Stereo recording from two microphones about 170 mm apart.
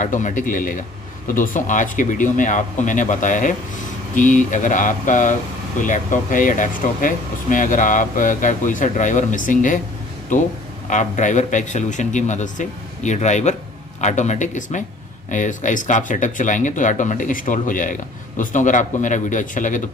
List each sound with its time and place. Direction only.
0.0 s speech: 45° left (ahead or behind)
10.9 s speech: 45° left (ahead or behind)